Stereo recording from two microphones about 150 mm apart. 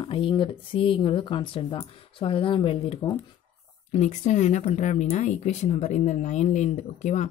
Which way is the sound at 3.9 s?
50° left (ahead or behind).